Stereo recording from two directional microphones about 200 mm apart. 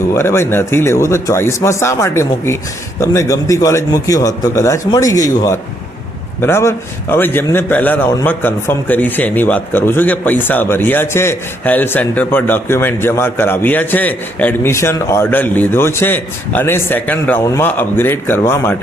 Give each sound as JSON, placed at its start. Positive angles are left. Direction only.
{"t": 0.1, "sound": "a man's voice", "side_deg": 10}